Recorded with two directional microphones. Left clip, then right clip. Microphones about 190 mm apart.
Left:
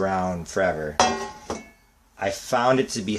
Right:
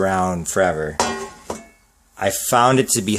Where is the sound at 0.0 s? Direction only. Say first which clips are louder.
Right 5 dB; 55° right (ahead or behind).